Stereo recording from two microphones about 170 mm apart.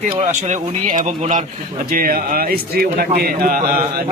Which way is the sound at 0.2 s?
45° right (ahead or behind).